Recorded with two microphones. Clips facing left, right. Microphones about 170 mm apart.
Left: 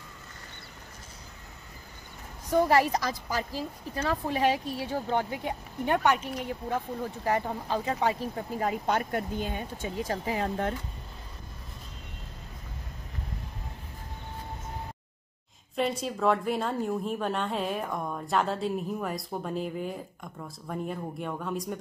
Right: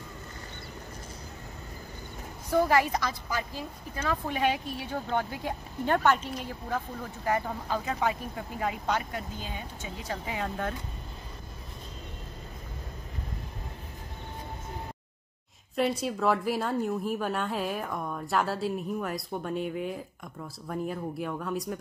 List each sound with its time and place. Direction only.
2.7 s a woman's voice: 35° left (ahead or behind)
5.5 s speech: 15° left (ahead or behind)
6.7 s speech: 25° left (ahead or behind)
8.8 s speech: 50° left (ahead or behind)
16.0 s a woman's voice: centre (ahead or behind)